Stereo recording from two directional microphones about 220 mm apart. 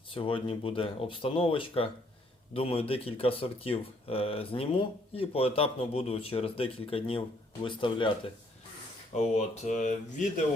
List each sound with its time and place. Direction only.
0.1 s speech: 25° left (ahead or behind)